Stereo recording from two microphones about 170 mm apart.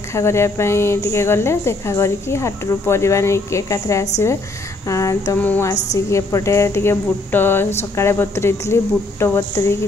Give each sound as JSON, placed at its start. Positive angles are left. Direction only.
{"t": 0.1, "sound": "speech", "side_deg": 15}